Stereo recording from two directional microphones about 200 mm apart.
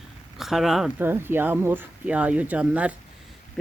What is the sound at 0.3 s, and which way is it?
Speech, centre (ahead or behind).